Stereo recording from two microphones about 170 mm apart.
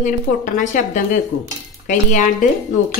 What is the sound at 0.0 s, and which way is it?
A woman's voice, 50° left (ahead or behind).